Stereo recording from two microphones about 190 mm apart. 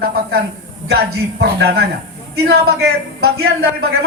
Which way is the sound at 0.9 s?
60° right (ahead or behind).